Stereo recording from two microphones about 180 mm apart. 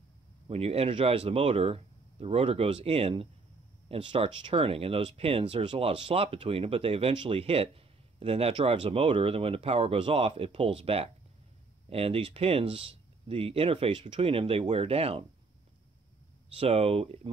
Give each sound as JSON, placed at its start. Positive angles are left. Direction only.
{"t": 0.5, "sound": "speech", "side_deg": -35}
{"t": 16.5, "sound": "speech", "side_deg": -35}